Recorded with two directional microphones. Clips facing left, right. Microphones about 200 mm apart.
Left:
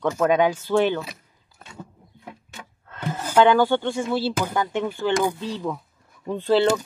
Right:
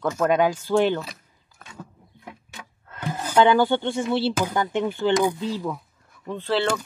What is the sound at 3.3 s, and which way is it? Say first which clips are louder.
Speech: left 1 dB; 15° right (ahead or behind).